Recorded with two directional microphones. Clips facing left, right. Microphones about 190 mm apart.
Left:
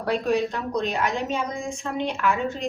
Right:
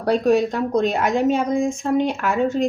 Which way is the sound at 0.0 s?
40° right (ahead or behind).